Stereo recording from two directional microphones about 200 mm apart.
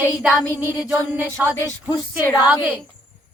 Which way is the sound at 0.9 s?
15° right (ahead or behind).